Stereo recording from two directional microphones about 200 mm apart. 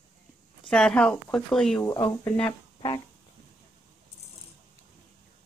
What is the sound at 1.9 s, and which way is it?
Speech, 15° left (ahead or behind).